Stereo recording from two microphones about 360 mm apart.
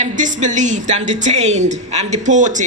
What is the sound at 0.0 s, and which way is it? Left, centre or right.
A man's voice, centre.